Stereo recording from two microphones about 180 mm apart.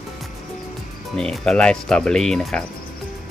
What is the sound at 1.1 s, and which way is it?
Speech, 5° left (ahead or behind).